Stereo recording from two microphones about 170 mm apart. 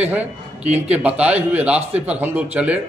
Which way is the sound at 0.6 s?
40° right (ahead or behind).